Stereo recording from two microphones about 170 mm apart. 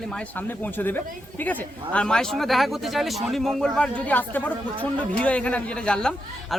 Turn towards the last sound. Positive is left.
turn(degrees=5)  # may be behind; listen again after turning